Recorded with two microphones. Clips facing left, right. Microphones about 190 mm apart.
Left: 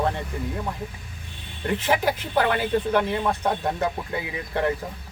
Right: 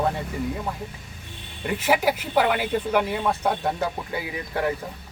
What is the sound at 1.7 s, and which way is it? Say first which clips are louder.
Speech: right 1 dB; 10° right (ahead or behind).